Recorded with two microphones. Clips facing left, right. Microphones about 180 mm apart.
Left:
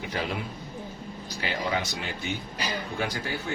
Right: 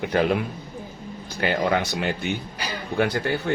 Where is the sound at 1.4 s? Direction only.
55° right (ahead or behind).